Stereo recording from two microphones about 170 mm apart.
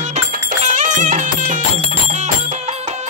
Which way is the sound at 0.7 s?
45° right (ahead or behind).